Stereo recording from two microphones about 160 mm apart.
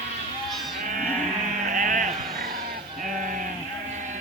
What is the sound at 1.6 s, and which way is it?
Sheep, 55° right (ahead or behind).